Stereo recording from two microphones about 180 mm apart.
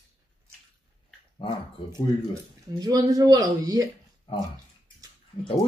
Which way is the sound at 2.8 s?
20° right (ahead or behind).